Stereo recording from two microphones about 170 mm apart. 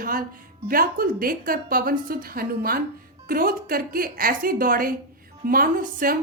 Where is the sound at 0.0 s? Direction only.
55° right (ahead or behind).